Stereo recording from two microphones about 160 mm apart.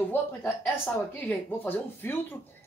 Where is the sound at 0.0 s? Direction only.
10° left (ahead or behind).